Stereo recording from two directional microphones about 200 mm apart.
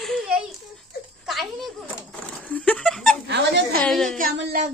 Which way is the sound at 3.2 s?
60° right (ahead or behind).